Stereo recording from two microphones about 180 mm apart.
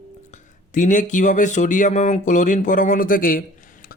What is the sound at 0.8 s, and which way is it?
A man's voice, 45° left (ahead or behind).